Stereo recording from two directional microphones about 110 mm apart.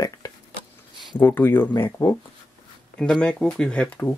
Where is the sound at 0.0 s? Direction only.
30° left (ahead or behind).